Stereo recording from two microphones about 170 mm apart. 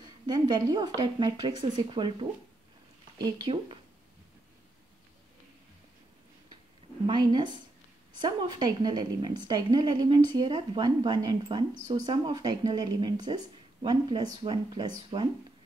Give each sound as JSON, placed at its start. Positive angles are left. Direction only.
{"t": 0.3, "sound": "speech", "side_deg": -25}
{"t": 7.1, "sound": "speech", "side_deg": -25}